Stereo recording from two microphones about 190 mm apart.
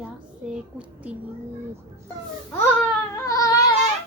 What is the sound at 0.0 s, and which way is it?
A child's voice, 5° right (ahead or behind).